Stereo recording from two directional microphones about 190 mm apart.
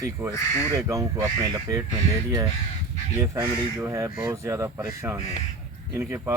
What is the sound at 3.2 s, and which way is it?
Speech, 15° right (ahead or behind).